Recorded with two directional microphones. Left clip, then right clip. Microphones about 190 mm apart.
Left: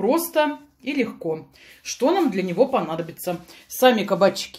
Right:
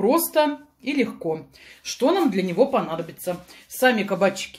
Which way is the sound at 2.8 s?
25° left (ahead or behind).